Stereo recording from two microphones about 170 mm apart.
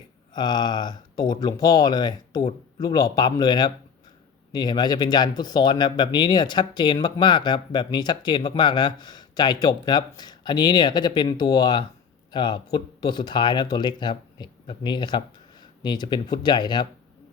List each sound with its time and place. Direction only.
0.3 s speech: 25° left (ahead or behind)